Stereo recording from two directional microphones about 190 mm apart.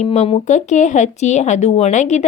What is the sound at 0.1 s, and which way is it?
A woman's voice, 35° left (ahead or behind).